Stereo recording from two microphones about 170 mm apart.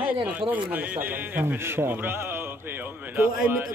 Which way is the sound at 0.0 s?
10° right (ahead or behind).